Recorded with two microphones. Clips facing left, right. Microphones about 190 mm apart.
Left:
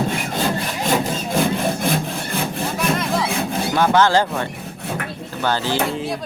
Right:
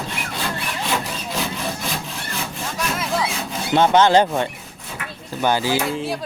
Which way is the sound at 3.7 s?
20° right (ahead or behind).